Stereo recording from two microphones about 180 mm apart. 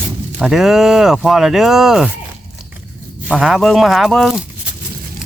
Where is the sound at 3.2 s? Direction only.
5° right (ahead or behind).